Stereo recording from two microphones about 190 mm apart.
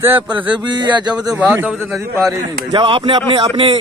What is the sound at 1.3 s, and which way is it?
Speech, 10° right (ahead or behind).